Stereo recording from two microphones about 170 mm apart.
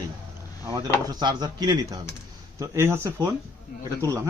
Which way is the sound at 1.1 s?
25° right (ahead or behind).